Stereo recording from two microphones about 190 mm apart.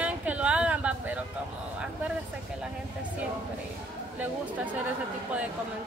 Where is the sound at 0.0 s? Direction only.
5° right (ahead or behind).